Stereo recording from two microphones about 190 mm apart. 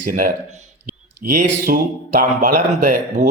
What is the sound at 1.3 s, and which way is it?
A man's voice, 50° right (ahead or behind).